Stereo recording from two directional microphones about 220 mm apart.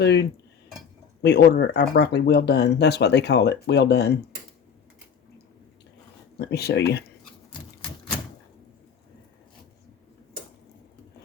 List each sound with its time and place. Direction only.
0.0 s speech: 50° left (ahead or behind)
6.4 s speech: 50° left (ahead or behind)